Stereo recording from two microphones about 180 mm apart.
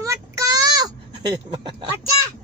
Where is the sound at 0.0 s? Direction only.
15° right (ahead or behind).